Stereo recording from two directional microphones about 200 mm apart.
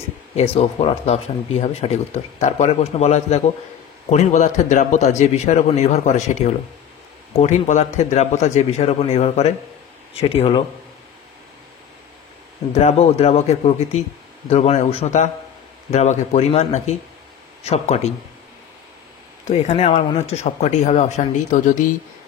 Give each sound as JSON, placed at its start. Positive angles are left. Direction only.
{"t": 0.6, "sound": "speech", "side_deg": 30}
{"t": 12.7, "sound": "speech", "side_deg": 30}
{"t": 19.4, "sound": "speech", "side_deg": 35}